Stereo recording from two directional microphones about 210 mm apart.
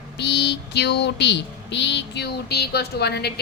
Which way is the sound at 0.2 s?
55° left (ahead or behind).